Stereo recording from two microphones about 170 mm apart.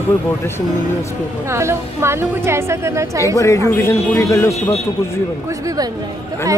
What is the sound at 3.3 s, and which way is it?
Speech, 15° left (ahead or behind).